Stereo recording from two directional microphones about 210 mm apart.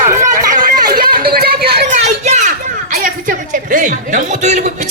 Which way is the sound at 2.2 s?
30° right (ahead or behind).